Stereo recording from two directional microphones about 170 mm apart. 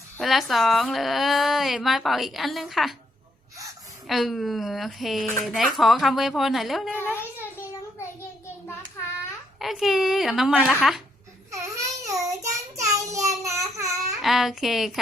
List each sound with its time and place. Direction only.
0.2 s speech: centre (ahead or behind)
4.0 s speech: centre (ahead or behind)
7.0 s a child's voice: 10° left (ahead or behind)
9.6 s speech: centre (ahead or behind)
11.5 s child singing: 20° right (ahead or behind)
14.2 s speech: centre (ahead or behind)